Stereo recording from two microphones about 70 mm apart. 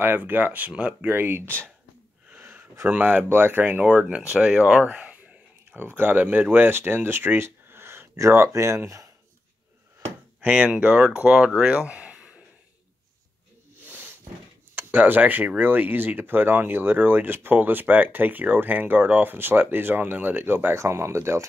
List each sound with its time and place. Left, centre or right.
0.0 s speech: right
1.1 s speech: right
2.3 s a sound: right
2.9 s speech: right
10.4 s speech: right
13.8 s snake: right
14.8 s speech: right